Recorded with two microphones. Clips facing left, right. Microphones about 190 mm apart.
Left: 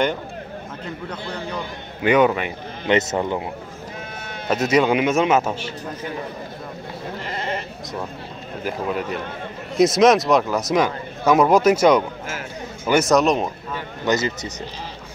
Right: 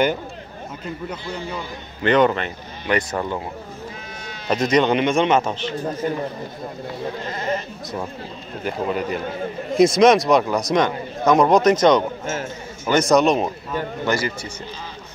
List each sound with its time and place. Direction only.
1.0 s a man's voice: 5° right (ahead or behind)
2.0 s a man's voice: 10° left (ahead or behind)
2.9 s speech: 20° left (ahead or behind)
4.5 s a man's voice: 5° left (ahead or behind)
6.0 s speech: 40° right (ahead or behind)
8.6 s speech: centre (ahead or behind)
14.0 s speech: 20° left (ahead or behind)